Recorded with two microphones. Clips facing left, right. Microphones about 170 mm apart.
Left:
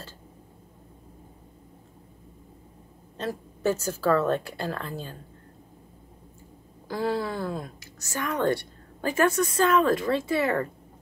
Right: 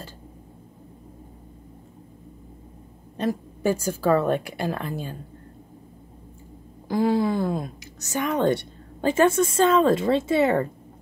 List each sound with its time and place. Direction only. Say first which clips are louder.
3.2 s speech: right 6 dB; 15° right (ahead or behind)
6.9 s a woman's voice: right 6 dB; 15° right (ahead or behind)